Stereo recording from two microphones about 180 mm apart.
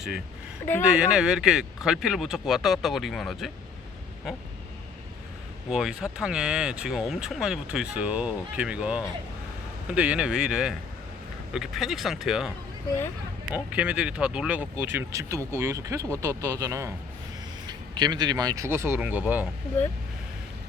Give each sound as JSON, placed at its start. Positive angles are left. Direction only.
{"t": 0.6, "sound": "speech", "side_deg": 15}
{"t": 0.9, "sound": "speech", "side_deg": -5}
{"t": 5.7, "sound": "speech", "side_deg": -5}
{"t": 13.7, "sound": "speech", "side_deg": -5}